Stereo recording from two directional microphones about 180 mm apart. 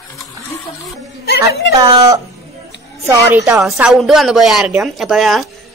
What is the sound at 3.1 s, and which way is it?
Speech, 15° right (ahead or behind).